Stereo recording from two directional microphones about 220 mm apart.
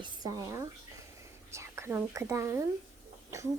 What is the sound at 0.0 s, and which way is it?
Speech, 15° right (ahead or behind).